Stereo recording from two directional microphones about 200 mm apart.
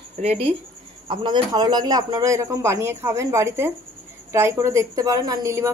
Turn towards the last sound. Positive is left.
turn(degrees=-15)  # may be behind; listen again after turning